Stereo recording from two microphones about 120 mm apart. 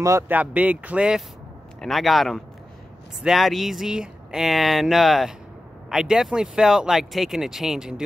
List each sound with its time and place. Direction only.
0.0 s speech: 25° right (ahead or behind)
0.4 s speech: 10° right (ahead or behind)